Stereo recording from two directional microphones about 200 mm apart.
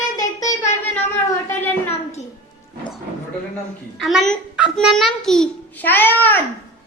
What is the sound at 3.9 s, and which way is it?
A child's voice, centre (ahead or behind).